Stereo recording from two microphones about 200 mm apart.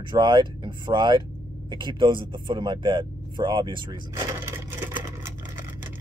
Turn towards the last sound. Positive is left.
turn(degrees=-10)  # may be behind; listen again after turning